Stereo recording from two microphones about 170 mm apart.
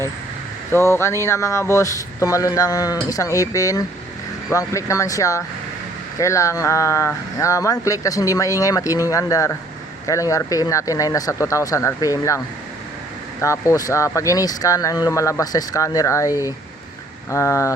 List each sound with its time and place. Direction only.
0.7 s speech: 15° left (ahead or behind)
13.4 s speech: 20° left (ahead or behind)